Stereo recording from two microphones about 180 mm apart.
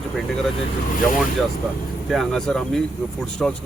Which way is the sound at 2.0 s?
Centre (ahead or behind).